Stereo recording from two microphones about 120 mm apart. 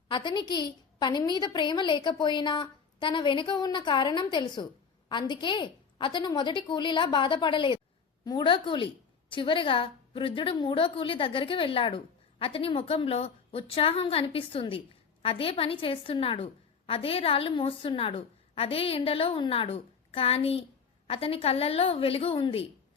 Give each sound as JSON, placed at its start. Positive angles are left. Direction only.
{"t": 0.1, "sound": "a woman's voice", "side_deg": 40}